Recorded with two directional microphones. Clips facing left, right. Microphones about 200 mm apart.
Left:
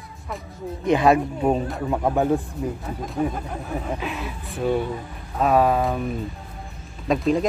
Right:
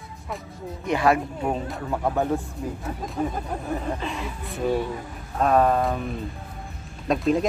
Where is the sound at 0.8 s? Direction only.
20° left (ahead or behind).